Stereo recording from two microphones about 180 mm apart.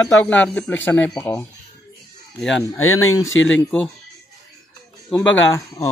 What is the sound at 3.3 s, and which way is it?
Speech, 90° left.